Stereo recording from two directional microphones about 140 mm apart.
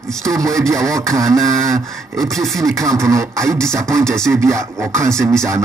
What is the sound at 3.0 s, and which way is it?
Speech, 20° right (ahead or behind).